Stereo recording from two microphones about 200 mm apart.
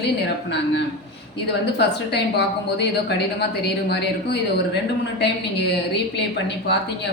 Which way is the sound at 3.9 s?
55° left (ahead or behind).